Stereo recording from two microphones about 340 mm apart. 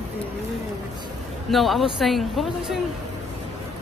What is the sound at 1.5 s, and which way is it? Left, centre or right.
Speech, centre.